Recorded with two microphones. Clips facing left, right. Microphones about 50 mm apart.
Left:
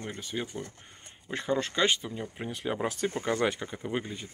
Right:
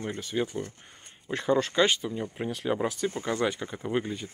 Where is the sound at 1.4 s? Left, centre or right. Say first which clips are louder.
Right 4 dB; centre.